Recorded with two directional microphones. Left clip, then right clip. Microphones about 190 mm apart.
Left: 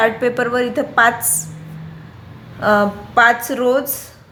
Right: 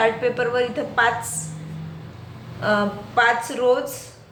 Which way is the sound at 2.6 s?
50° left (ahead or behind).